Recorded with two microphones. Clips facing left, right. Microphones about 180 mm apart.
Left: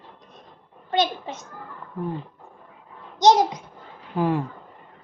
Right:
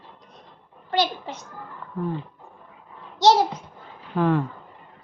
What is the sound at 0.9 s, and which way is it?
Speech, 20° left (ahead or behind).